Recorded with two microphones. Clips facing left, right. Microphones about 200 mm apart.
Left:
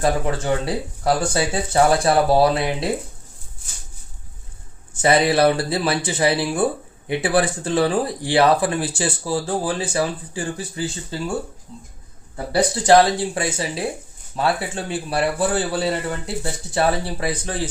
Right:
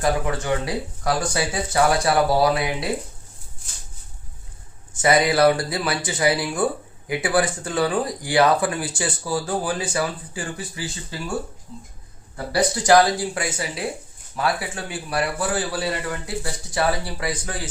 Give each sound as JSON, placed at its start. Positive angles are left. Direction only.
{"t": 0.0, "sound": "a man's voice", "side_deg": 25}
{"t": 5.0, "sound": "a man's voice", "side_deg": 30}
{"t": 12.5, "sound": "a man's voice", "side_deg": 25}